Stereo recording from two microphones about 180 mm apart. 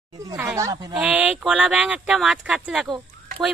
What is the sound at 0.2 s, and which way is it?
Speech, 20° right (ahead or behind).